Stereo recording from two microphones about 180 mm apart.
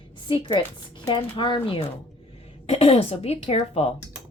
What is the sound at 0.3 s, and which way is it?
Speech, 25° left (ahead or behind).